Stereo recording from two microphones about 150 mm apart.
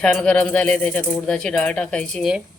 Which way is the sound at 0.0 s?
5° left (ahead or behind).